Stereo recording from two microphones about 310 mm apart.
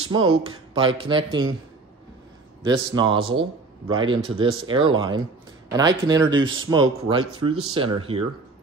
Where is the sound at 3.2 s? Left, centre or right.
Right.